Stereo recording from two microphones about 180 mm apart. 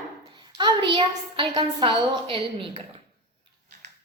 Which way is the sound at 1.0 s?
30° right (ahead or behind).